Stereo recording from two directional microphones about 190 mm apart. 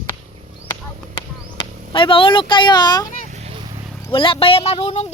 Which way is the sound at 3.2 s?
35° right (ahead or behind).